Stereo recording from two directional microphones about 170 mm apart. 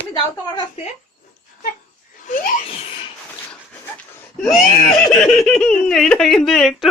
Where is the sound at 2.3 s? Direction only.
55° left (ahead or behind).